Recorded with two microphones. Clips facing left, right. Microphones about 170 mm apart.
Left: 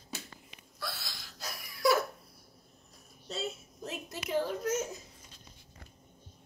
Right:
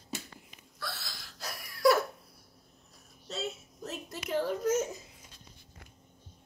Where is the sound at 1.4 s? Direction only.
Centre (ahead or behind).